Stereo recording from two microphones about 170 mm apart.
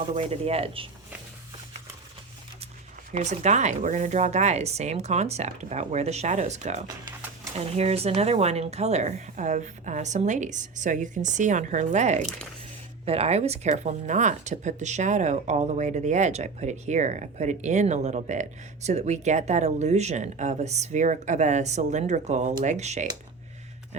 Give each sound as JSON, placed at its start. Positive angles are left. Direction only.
{"t": 0.1, "sound": "speech", "side_deg": -40}
{"t": 3.1, "sound": "speech", "side_deg": -45}